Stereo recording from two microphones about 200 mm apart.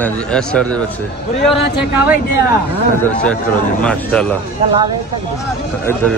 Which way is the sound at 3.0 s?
5° left (ahead or behind).